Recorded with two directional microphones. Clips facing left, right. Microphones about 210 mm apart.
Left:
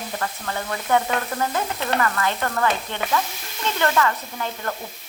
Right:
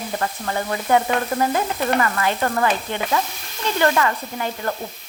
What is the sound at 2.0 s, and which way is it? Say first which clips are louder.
Sizzle: right 2 dB; 15° right (ahead or behind).